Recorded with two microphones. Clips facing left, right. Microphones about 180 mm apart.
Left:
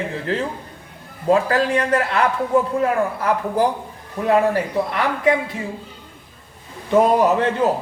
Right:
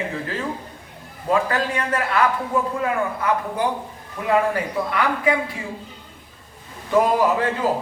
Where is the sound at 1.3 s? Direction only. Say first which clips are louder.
Left 4 dB; 35° left (ahead or behind).